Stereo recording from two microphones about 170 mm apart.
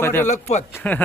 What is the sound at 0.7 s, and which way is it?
Speech, 10° left (ahead or behind).